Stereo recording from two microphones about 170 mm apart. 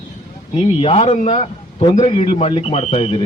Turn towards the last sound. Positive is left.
turn(degrees=35)  # may be behind; listen again after turning